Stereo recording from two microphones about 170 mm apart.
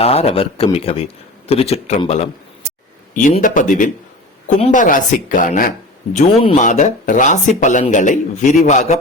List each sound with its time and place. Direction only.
0.0 s speech: 35° left (ahead or behind)
3.4 s speech: 50° left (ahead or behind)
6.1 s speech: 30° left (ahead or behind)
6.6 s speech: 45° left (ahead or behind)